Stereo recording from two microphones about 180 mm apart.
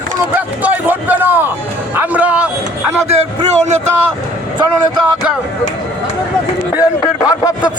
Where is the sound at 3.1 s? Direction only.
35° right (ahead or behind).